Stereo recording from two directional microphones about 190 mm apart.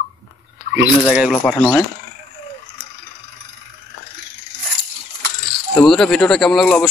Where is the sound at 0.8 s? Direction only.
5° right (ahead or behind).